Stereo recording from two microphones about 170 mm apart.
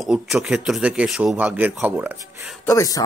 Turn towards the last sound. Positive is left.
turn(degrees=20)  # may be behind; listen again after turning